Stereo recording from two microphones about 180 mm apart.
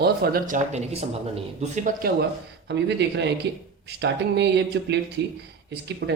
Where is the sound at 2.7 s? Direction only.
75° right (ahead or behind).